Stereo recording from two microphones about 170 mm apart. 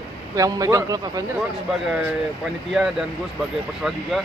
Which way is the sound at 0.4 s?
20° right (ahead or behind).